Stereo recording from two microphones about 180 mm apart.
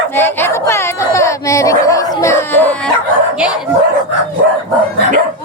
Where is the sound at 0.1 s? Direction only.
10° left (ahead or behind).